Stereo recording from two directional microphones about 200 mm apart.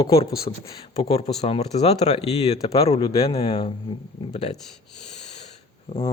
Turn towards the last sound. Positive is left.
turn(degrees=30)  # may be behind; listen again after turning